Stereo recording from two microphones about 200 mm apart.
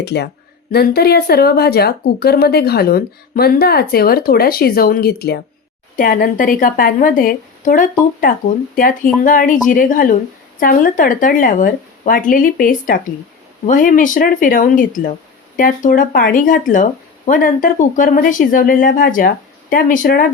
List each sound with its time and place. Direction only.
0.0 s speech: 55° left (ahead or behind)